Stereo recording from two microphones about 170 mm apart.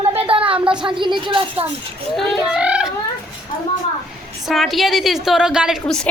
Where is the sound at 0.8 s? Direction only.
30° right (ahead or behind).